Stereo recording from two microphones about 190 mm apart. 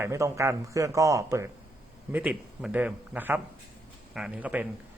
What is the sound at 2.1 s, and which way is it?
Speech, 5° right (ahead or behind).